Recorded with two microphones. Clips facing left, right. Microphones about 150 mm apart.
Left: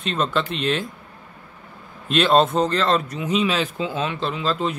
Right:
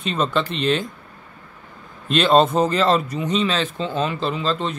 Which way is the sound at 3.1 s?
5° left (ahead or behind).